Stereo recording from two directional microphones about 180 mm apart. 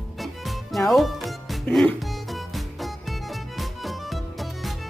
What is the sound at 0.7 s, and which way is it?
Music, centre (ahead or behind).